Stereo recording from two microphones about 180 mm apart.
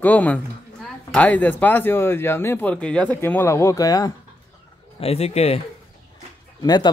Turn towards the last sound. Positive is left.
turn(degrees=25)  # may be behind; listen again after turning